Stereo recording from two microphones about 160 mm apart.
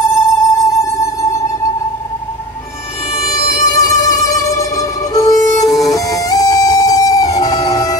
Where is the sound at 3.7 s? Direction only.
20° left (ahead or behind).